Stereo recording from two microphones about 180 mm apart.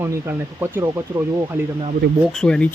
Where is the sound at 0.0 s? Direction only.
15° right (ahead or behind).